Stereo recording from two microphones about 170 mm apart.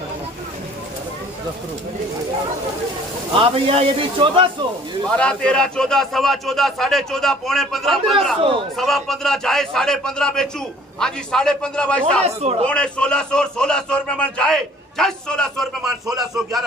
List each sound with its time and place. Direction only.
3.3 s a man's voice: 35° right (ahead or behind)
5.1 s a man's voice: 5° left (ahead or behind)
8.4 s a man's voice: 30° right (ahead or behind)
8.7 s a man's voice: centre (ahead or behind)
12.3 s a man's voice: 35° right (ahead or behind)
12.6 s a man's voice: 5° left (ahead or behind)